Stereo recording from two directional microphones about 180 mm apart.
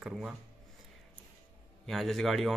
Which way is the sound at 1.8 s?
Centre (ahead or behind).